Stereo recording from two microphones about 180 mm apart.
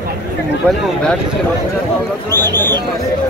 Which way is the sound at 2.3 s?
20° right (ahead or behind).